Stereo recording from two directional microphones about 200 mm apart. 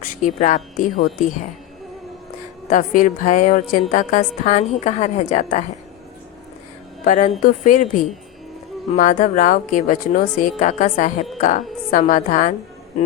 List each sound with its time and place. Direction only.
0.0 s a woman's voice: 40° left (ahead or behind)
2.6 s a woman's voice: 40° left (ahead or behind)
7.0 s a woman's voice: 40° left (ahead or behind)